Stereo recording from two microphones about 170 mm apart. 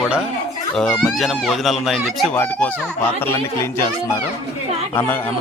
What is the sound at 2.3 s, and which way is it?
A man's voice, 10° left (ahead or behind).